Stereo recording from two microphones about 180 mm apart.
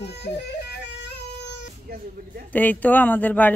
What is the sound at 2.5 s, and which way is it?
Speech, 10° left (ahead or behind).